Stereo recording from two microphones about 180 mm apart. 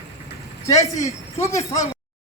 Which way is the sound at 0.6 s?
20° left (ahead or behind).